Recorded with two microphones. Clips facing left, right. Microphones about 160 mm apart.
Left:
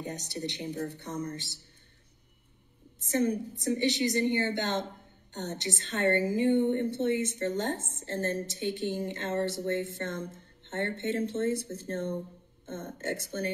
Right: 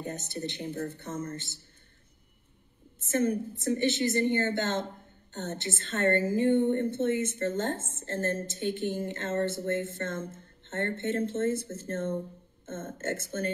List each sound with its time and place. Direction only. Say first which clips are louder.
0.2 s a woman's voice: right 1 dB; 15° left (ahead or behind)
3.0 s a woman's voice: right 1 dB; 15° left (ahead or behind)